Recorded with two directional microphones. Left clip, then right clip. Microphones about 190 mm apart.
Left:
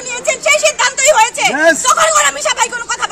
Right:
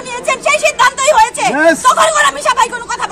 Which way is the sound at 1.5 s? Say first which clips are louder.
Right 1 dB; 30° left (ahead or behind).